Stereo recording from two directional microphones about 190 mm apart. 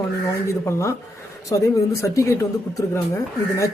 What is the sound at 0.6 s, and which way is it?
Speech, 15° left (ahead or behind).